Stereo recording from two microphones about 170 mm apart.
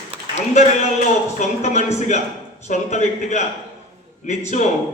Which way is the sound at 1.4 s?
40° left (ahead or behind).